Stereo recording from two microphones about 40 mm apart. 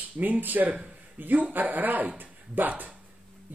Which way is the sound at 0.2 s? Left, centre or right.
Right.